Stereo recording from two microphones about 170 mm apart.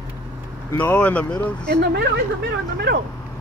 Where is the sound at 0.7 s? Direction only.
10° left (ahead or behind).